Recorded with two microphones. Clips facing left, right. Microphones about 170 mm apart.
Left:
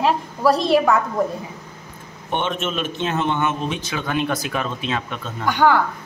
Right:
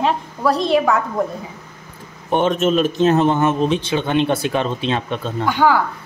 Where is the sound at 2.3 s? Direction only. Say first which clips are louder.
Right 8 dB; 40° right (ahead or behind).